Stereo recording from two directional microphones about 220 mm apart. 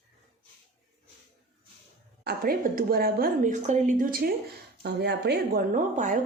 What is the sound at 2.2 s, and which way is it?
A woman's voice, 45° right (ahead or behind).